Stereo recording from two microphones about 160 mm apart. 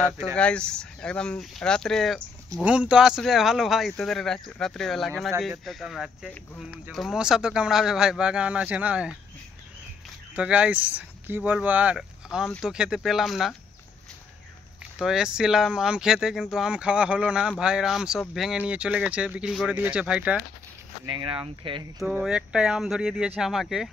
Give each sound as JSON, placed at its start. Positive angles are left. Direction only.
{"t": 0.4, "sound": "speech", "side_deg": 5}
{"t": 10.3, "sound": "speech", "side_deg": -5}
{"t": 15.0, "sound": "speech", "side_deg": -5}
{"t": 21.1, "sound": "speech", "side_deg": -30}
{"t": 22.0, "sound": "speech", "side_deg": -5}